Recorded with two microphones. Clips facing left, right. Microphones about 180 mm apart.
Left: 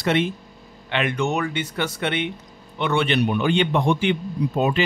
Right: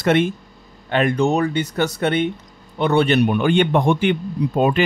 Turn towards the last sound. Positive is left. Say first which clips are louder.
# right 3 dB
turn(degrees=-50)  # may be behind; listen again after turning